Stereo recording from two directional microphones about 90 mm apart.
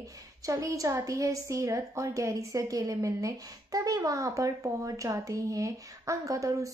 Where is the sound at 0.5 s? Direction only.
35° right (ahead or behind).